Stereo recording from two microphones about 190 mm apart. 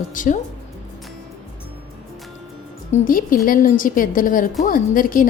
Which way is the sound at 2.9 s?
45° left (ahead or behind).